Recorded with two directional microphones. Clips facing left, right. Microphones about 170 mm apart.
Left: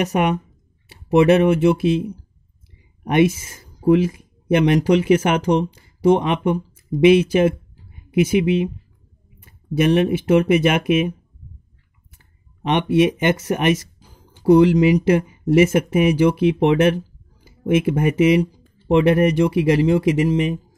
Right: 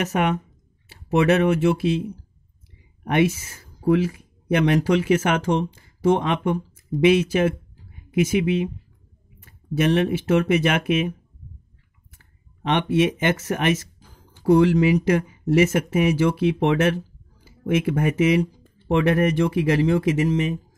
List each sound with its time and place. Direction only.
0.0 s speech: 15° left (ahead or behind)
12.6 s speech: 15° left (ahead or behind)